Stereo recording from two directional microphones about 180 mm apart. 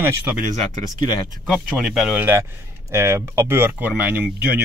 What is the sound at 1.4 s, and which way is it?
Speech, 5° right (ahead or behind).